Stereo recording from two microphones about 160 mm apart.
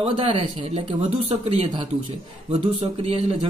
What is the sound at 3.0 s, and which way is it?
Speech, 35° right (ahead or behind).